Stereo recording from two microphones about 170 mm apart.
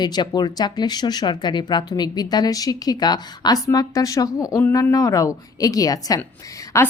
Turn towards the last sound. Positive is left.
turn(degrees=15)  # may be behind; listen again after turning